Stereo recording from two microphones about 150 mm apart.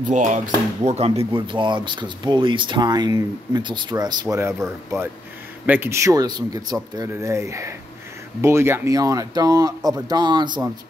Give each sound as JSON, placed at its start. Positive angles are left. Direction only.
{"t": 0.1, "sound": "speech", "side_deg": -55}
{"t": 0.8, "sound": "speech", "side_deg": -45}